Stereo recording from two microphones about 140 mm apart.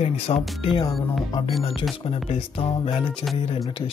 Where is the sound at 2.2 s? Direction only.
40° left (ahead or behind).